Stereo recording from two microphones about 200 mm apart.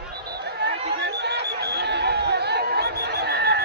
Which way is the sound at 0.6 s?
55° right (ahead or behind).